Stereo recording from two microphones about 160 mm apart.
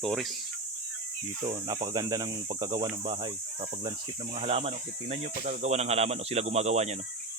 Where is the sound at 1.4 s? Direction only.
25° right (ahead or behind).